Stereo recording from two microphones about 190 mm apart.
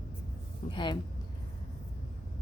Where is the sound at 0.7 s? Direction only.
25° left (ahead or behind).